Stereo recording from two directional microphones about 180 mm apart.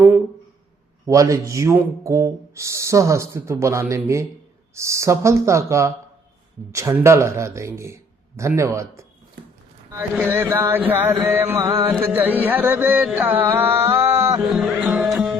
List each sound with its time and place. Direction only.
1.0 s music: 15° right (ahead or behind)
14.5 s music: centre (ahead or behind)